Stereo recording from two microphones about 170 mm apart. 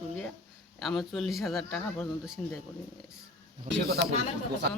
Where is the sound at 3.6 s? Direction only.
90° right.